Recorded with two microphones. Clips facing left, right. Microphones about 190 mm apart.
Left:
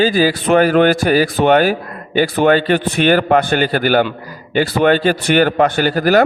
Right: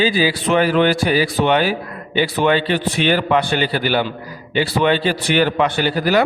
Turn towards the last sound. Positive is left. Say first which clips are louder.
# left 4 dB
turn(degrees=45)  # may be behind; listen again after turning